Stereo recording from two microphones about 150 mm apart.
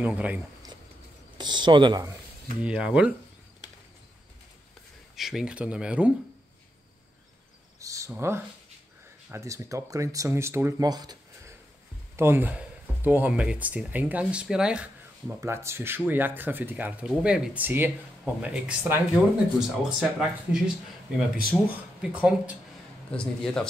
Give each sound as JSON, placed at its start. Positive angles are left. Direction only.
{"t": 0.0, "sound": "speech", "side_deg": -10}
{"t": 1.4, "sound": "speech", "side_deg": -30}
{"t": 2.6, "sound": "speech", "side_deg": -5}
{"t": 5.1, "sound": "speech", "side_deg": 0}
{"t": 7.8, "sound": "a sound", "side_deg": -20}
{"t": 8.1, "sound": "speech", "side_deg": -15}
{"t": 12.2, "sound": "speech", "side_deg": -15}
{"t": 15.4, "sound": "speech", "side_deg": -15}
{"t": 22.0, "sound": "speech", "side_deg": -5}
{"t": 23.1, "sound": "speech", "side_deg": 5}